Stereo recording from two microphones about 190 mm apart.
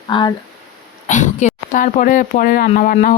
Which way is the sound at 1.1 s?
40° left (ahead or behind).